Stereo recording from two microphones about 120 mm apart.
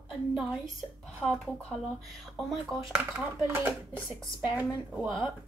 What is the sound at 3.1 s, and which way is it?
Speech, 20° right (ahead or behind).